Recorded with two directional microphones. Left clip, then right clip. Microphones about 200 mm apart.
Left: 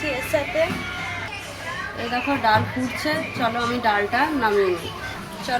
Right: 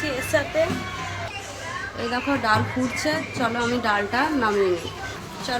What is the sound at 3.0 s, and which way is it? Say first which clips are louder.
Speech: left 3 dB; 15° right (ahead or behind).